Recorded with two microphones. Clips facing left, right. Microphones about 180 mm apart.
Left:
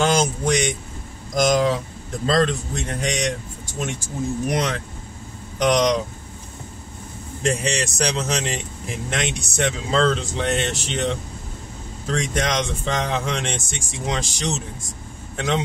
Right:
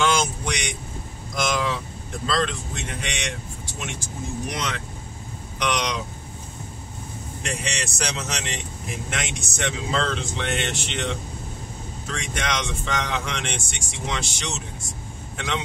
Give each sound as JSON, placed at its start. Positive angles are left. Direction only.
{"t": 0.0, "sound": "vehicle", "side_deg": 40}
{"t": 1.3, "sound": "speech", "side_deg": 40}
{"t": 4.5, "sound": "speech", "side_deg": 45}
{"t": 7.4, "sound": "speech", "side_deg": 35}